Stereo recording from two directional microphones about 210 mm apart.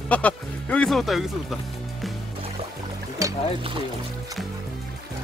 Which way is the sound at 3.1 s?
20° right (ahead or behind).